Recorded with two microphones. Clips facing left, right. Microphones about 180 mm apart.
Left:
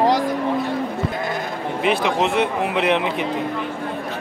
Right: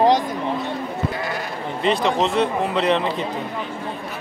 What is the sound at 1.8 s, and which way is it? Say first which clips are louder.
Speech: even; 10° left (ahead or behind).